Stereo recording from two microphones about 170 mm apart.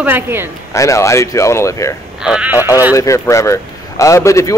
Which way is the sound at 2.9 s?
15° left (ahead or behind).